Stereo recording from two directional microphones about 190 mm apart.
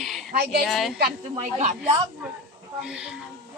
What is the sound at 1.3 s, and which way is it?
Speech, 35° right (ahead or behind).